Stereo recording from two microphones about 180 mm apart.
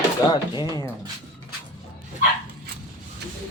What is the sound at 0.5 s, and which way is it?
Speech, 20° left (ahead or behind).